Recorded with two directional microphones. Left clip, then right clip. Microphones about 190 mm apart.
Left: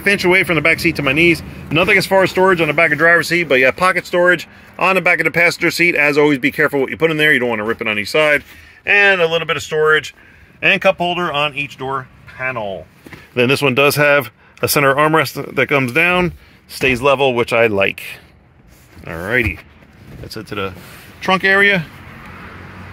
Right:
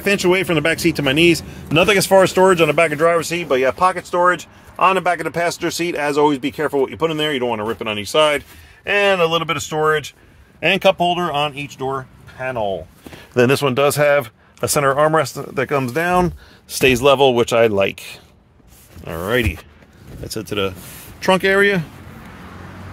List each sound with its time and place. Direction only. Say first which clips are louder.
0.0 s speech: left 3 dB; 10° right (ahead or behind)
3.0 s speech: left 4 dB; centre (ahead or behind)
8.8 s speech: left 4 dB; 15° right (ahead or behind)
10.6 s speech: left 1 dB; 20° right (ahead or behind)
13.5 s speech: left 3 dB; centre (ahead or behind)
16.6 s speech: right 1 dB; 35° right (ahead or behind); by 21.8 s 10° right (ahead or behind)